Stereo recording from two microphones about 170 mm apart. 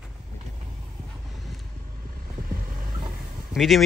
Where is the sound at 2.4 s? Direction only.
55° right (ahead or behind).